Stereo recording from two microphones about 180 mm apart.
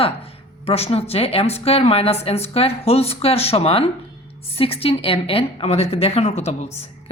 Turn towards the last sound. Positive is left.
turn(degrees=40)  # may be behind; listen again after turning